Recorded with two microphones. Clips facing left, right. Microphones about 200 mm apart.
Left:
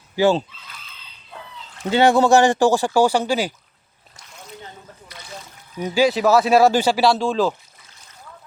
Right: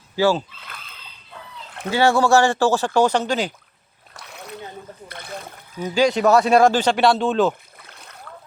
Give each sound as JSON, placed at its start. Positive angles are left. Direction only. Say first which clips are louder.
{"t": 0.2, "sound": "speech", "louder": "left 2 dB", "side_deg": 20}
{"t": 1.9, "sound": "speech", "louder": "left 2 dB", "side_deg": 20}
{"t": 4.1, "sound": "splash", "louder": "right 5 dB", "side_deg": -65}
{"t": 5.0, "sound": "a sound", "louder": "right 3 dB", "side_deg": -55}
{"t": 5.8, "sound": "speech", "louder": "even", "side_deg": 10}
{"t": 7.8, "sound": "boat", "louder": "right 5 dB", "side_deg": -60}